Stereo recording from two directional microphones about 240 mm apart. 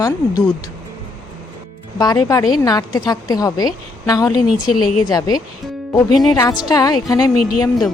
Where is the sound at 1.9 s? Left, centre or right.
Centre.